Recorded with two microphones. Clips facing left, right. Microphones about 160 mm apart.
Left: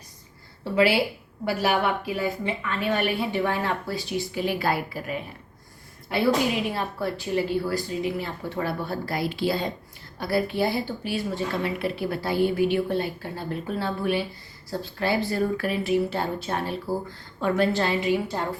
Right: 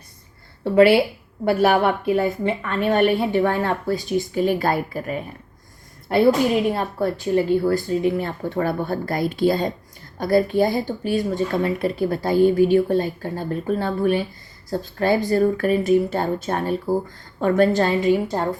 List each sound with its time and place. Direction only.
0.6 s a woman's voice: 55° right (ahead or behind)